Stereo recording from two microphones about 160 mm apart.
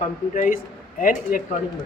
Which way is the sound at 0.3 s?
55° left (ahead or behind).